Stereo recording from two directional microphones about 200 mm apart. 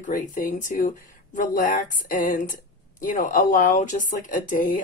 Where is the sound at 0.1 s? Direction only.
45° left (ahead or behind).